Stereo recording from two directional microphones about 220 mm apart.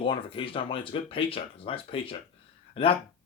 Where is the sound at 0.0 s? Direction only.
25° left (ahead or behind).